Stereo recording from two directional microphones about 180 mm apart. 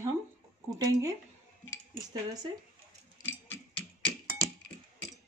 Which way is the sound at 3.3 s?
10° left (ahead or behind).